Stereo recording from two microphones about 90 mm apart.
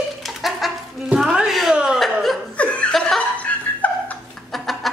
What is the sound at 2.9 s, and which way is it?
Laughter, 5° left (ahead or behind).